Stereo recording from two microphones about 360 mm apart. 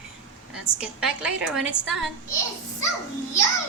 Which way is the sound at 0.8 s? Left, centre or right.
Centre.